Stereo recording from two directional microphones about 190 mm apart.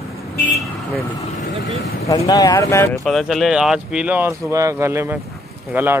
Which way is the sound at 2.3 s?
20° left (ahead or behind).